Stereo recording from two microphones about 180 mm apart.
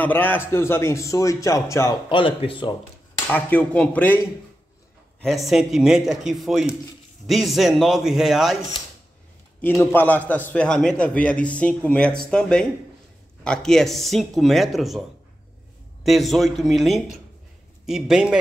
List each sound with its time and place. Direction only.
0.0 s a man's voice: 10° left (ahead or behind)
2.0 s speech: 30° left (ahead or behind)
3.3 s a man's voice: 10° left (ahead or behind)
5.2 s speech: centre (ahead or behind)
9.6 s a man's voice: 10° left (ahead or behind); by 18.4 s 5° right (ahead or behind)